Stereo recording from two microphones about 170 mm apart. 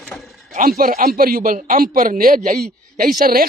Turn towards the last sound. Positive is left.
turn(degrees=-60)  # may be behind; listen again after turning